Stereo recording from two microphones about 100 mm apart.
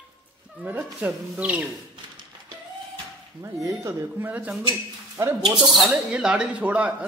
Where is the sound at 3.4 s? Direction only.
30° right (ahead or behind).